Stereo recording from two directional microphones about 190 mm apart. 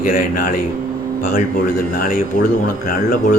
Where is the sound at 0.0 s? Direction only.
45° left (ahead or behind).